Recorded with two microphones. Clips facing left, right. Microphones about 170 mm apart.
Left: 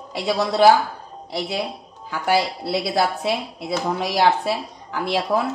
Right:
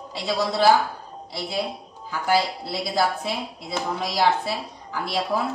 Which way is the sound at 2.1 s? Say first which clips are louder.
Left 2 dB; 70° left (ahead or behind).